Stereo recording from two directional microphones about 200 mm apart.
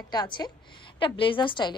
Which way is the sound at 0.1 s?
20° left (ahead or behind).